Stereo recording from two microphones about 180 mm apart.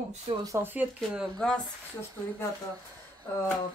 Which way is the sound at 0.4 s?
15° right (ahead or behind).